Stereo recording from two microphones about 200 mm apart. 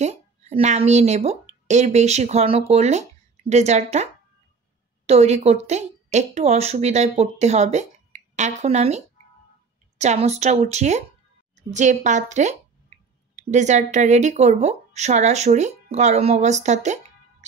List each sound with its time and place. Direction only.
0.0 s a woman's voice: 30° right (ahead or behind)